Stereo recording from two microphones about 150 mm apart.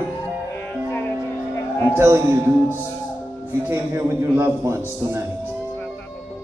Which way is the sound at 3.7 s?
15° right (ahead or behind).